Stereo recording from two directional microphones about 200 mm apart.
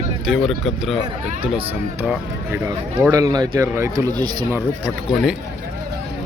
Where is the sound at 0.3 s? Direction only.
Centre (ahead or behind).